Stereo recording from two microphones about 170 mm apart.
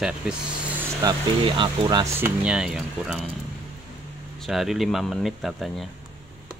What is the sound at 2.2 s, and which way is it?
Speech, 5° right (ahead or behind).